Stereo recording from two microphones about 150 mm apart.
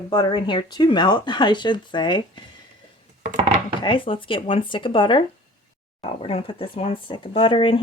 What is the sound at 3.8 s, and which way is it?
Speech, 35° left (ahead or behind).